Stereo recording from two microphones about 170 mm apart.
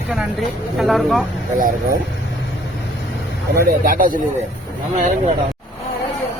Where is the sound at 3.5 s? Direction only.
55° right (ahead or behind).